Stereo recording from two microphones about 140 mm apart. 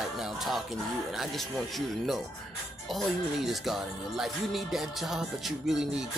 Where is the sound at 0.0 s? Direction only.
Centre (ahead or behind).